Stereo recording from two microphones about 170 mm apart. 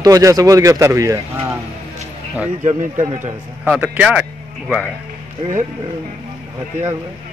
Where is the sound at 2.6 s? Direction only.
45° right (ahead or behind).